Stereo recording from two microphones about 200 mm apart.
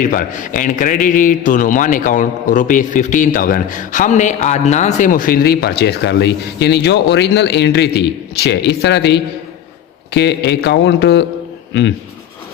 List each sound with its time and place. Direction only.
0.0 s a man's voice: 45° left (ahead or behind); by 11.9 s 65° left (ahead or behind)